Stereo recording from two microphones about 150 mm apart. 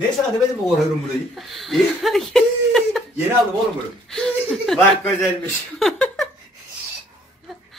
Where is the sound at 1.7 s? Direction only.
Centre (ahead or behind).